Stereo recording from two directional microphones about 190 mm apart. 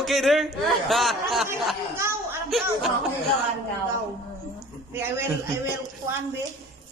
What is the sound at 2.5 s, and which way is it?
Music, centre (ahead or behind).